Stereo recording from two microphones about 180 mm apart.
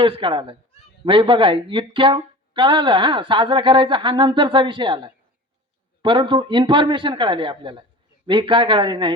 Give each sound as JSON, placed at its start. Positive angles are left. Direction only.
{"t": 0.0, "sound": "speech", "side_deg": -30}